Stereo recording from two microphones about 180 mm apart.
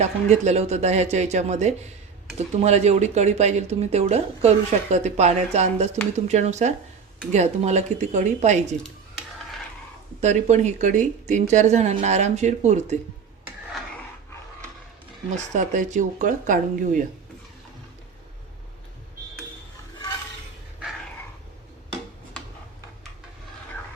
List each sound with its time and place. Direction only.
0.0 s speech: 40° right (ahead or behind)
10.2 s speech: 40° right (ahead or behind)
15.5 s speech: 45° right (ahead or behind)